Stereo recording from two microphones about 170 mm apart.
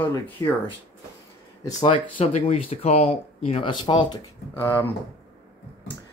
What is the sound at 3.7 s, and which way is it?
Speech, 25° left (ahead or behind).